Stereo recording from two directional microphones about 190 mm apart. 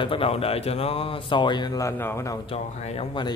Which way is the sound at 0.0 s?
30° left (ahead or behind).